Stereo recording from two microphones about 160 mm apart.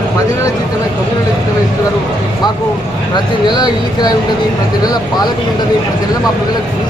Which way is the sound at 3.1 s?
25° left (ahead or behind).